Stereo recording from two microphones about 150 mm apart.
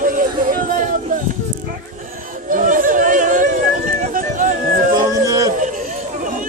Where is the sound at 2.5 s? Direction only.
65° right (ahead or behind).